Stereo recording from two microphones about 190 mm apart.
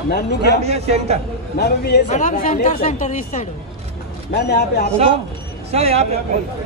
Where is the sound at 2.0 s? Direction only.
40° left (ahead or behind).